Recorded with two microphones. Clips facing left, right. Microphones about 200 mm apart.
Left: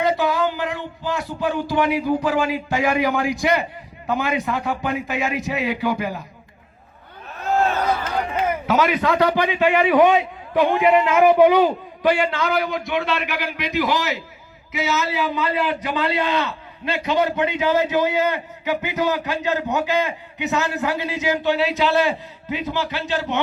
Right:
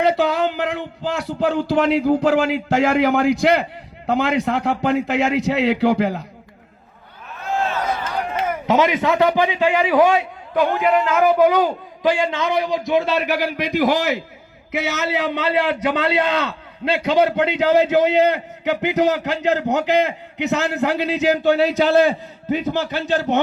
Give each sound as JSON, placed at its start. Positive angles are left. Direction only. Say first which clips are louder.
{"t": 0.0, "sound": "speech", "louder": "right 2 dB", "side_deg": -65}
{"t": 8.6, "sound": "a man's voice", "louder": "right 4 dB", "side_deg": -25}
{"t": 9.0, "sound": "a man's voice", "louder": "right 2 dB", "side_deg": -15}
{"t": 9.9, "sound": "a man's voice", "louder": "even", "side_deg": 0}
{"t": 12.0, "sound": "a man's voice", "louder": "even", "side_deg": -15}
{"t": 12.9, "sound": "a man's voice", "louder": "right 8 dB", "side_deg": -35}
{"t": 14.7, "sound": "a man's voice", "louder": "right 1 dB", "side_deg": -60}